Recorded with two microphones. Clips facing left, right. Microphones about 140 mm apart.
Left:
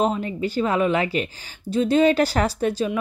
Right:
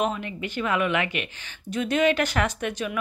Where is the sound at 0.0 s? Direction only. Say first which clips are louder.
Left 5 dB; 35° left (ahead or behind).